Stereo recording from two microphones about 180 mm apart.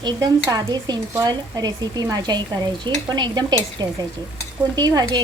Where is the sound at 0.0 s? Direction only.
20° right (ahead or behind).